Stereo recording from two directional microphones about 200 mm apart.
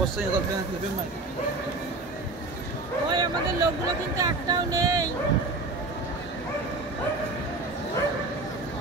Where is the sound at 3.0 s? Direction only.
20° right (ahead or behind).